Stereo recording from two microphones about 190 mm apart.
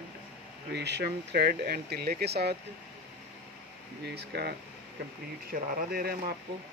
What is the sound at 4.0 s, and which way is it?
Speech, 60° right (ahead or behind).